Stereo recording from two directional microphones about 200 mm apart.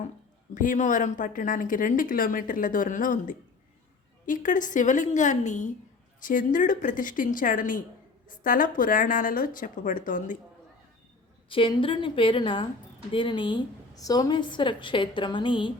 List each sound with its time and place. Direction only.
0.5 s speech: 40° left (ahead or behind)
11.4 s a woman's voice: 25° left (ahead or behind)